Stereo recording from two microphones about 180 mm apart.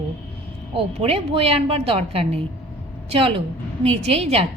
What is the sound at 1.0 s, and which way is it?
A woman's voice, 35° right (ahead or behind).